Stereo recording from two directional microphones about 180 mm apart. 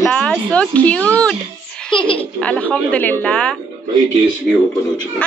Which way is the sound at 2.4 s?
5° left (ahead or behind).